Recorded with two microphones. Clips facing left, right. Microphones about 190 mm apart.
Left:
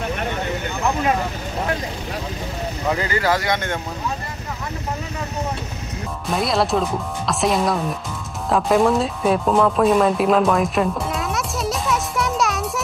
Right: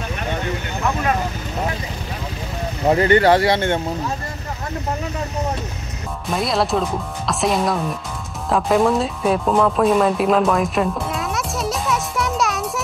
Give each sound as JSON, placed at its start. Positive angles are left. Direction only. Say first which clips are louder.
{"t": 2.9, "sound": "speech", "louder": "right 7 dB", "side_deg": -35}
{"t": 6.3, "sound": "speech", "louder": "even", "side_deg": 0}
{"t": 8.5, "sound": "music", "louder": "even", "side_deg": 0}